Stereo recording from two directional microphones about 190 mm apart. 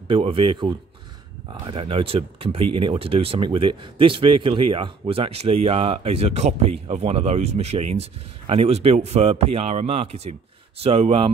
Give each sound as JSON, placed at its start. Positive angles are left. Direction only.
{"t": 0.1, "sound": "speech", "side_deg": -30}